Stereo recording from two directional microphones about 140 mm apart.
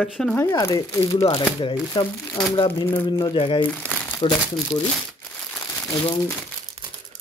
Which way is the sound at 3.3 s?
40° left (ahead or behind).